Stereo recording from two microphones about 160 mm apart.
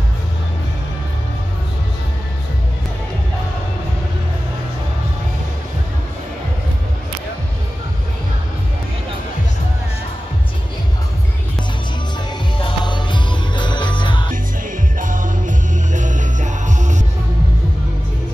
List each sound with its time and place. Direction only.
12.5 s music: 30° left (ahead or behind)
15.0 s music: 55° right (ahead or behind)